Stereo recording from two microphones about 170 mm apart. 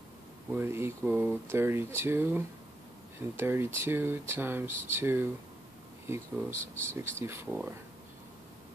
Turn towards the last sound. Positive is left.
turn(degrees=-15)  # may be behind; listen again after turning